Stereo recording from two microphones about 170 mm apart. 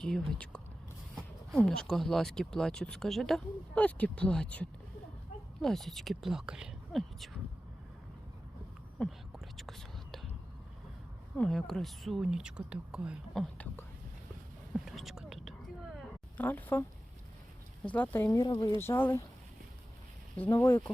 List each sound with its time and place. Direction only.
0.0 s speech: 5° left (ahead or behind)
9.0 s whispering: centre (ahead or behind)
11.3 s speech: centre (ahead or behind)
14.7 s whispering: centre (ahead or behind)
16.4 s speech: 10° left (ahead or behind)
17.9 s speech: 10° left (ahead or behind)
20.3 s speech: 15° left (ahead or behind)